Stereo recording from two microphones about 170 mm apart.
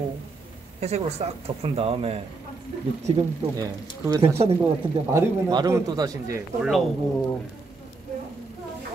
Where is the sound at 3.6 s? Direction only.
20° right (ahead or behind).